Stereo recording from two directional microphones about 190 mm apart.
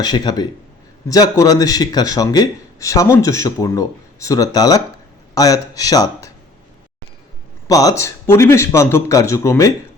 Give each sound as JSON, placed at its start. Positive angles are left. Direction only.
{"t": 0.0, "sound": "a man's voice", "side_deg": 20}
{"t": 7.7, "sound": "a man's voice", "side_deg": 20}